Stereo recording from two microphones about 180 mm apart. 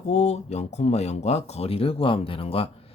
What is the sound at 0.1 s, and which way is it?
Speech, 35° left (ahead or behind).